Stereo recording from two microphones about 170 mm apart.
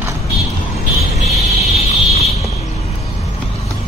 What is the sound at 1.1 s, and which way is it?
Vehicle, 40° left (ahead or behind).